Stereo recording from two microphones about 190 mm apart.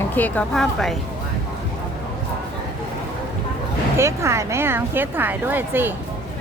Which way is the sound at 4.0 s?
15° right (ahead or behind).